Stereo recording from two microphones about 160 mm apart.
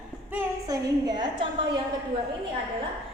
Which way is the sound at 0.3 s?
25° right (ahead or behind).